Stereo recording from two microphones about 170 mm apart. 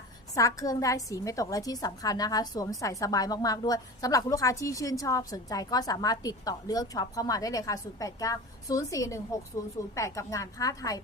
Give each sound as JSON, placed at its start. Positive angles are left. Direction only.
{"t": 0.3, "sound": "a woman's voice", "side_deg": 20}